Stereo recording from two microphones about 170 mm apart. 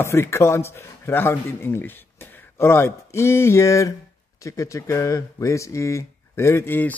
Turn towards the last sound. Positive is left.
turn(degrees=10)  # may be behind; listen again after turning